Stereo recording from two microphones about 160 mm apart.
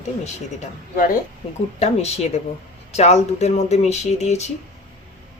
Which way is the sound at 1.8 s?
40° left (ahead or behind).